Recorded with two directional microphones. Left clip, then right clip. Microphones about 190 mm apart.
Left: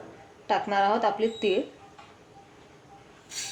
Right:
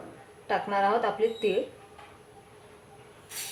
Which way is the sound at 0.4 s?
55° left (ahead or behind).